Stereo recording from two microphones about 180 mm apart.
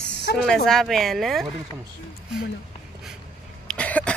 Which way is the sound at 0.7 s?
Centre (ahead or behind).